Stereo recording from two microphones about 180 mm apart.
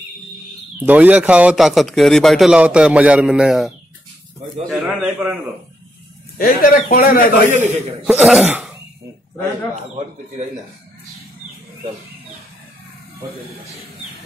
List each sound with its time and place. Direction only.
0.7 s a man's voice: 10° right (ahead or behind)
6.3 s a man's voice: 50° left (ahead or behind)
7.4 s a man's voice: 40° right (ahead or behind)
8.0 s a man's voice: 10° right (ahead or behind)